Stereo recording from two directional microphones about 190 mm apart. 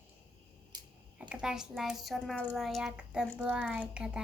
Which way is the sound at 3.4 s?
5° right (ahead or behind).